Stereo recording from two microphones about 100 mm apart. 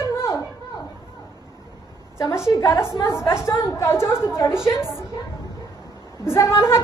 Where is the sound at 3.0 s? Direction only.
30° left (ahead or behind).